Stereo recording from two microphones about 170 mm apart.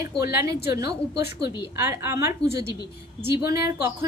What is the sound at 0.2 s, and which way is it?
Speech, 20° right (ahead or behind).